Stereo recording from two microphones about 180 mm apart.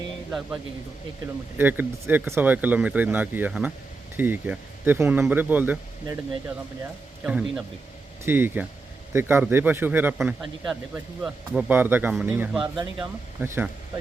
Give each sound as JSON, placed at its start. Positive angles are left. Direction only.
{"t": 0.3, "sound": "speech", "side_deg": 0}
{"t": 7.3, "sound": "speech", "side_deg": -5}
{"t": 12.6, "sound": "speech", "side_deg": -25}
{"t": 13.0, "sound": "speech", "side_deg": -10}